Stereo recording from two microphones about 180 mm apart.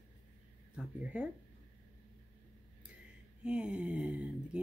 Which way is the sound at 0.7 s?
5° right (ahead or behind).